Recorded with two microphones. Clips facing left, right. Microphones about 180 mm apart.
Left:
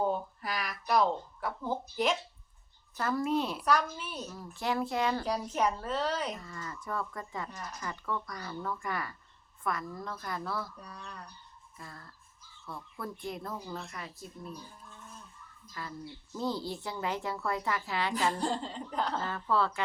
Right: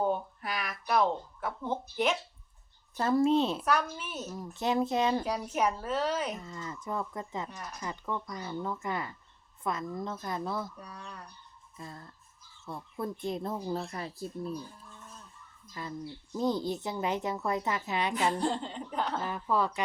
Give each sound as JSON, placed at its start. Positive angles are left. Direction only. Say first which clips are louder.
{"t": 0.0, "sound": "a sound", "louder": "right 1 dB", "side_deg": 0}
{"t": 2.9, "sound": "speech", "louder": "right 5 dB", "side_deg": -25}
{"t": 3.7, "sound": "a woman's voice", "louder": "even", "side_deg": -5}
{"t": 4.3, "sound": "speech", "louder": "right 4 dB", "side_deg": -20}
{"t": 5.2, "sound": "a woman's voice", "louder": "even", "side_deg": -5}
{"t": 6.4, "sound": "speech", "louder": "right 2 dB", "side_deg": -20}
{"t": 10.8, "sound": "speech", "louder": "right 1 dB", "side_deg": -5}
{"t": 11.8, "sound": "speech", "louder": "right 4 dB", "side_deg": -20}
{"t": 15.8, "sound": "speech", "louder": "right 3 dB", "side_deg": -20}
{"t": 18.3, "sound": "a woman's voice", "louder": "right 2 dB", "side_deg": 0}
{"t": 19.2, "sound": "speech", "louder": "right 1 dB", "side_deg": -15}